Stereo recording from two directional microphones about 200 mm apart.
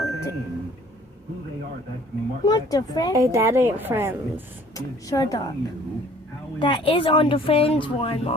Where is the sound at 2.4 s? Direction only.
20° left (ahead or behind).